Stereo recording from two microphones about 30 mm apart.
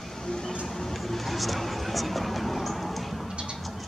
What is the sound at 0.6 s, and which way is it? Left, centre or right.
Music, centre.